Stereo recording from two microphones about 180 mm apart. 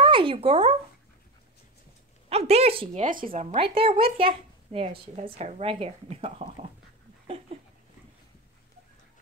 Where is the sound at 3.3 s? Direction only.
35° right (ahead or behind).